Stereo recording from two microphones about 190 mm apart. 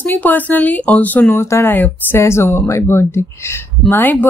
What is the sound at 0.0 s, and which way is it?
Speech, 10° left (ahead or behind).